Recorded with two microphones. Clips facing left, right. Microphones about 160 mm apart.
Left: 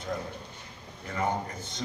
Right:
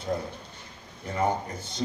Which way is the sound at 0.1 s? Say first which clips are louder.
Right 4 dB; 30° right (ahead or behind).